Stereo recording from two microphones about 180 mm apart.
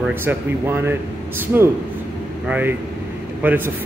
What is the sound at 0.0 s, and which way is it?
Speech, 10° right (ahead or behind).